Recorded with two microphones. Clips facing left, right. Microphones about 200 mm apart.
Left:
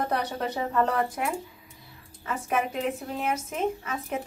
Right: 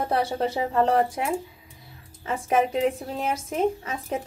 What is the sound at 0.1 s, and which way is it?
A woman's voice, 30° right (ahead or behind).